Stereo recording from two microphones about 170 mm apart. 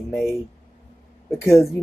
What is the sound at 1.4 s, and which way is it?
Speech, 15° left (ahead or behind).